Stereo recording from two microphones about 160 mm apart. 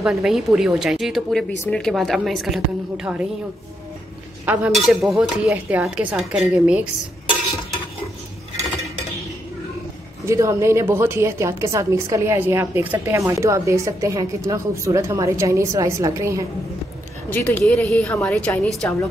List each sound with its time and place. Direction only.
0.0 s a woman's voice: 5° right (ahead or behind)
4.7 s a woman's voice: centre (ahead or behind)
10.2 s a woman's voice: 20° right (ahead or behind)
17.3 s a woman's voice: 10° left (ahead or behind)